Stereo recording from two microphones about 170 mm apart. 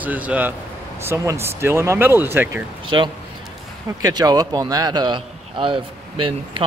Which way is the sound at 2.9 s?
25° right (ahead or behind).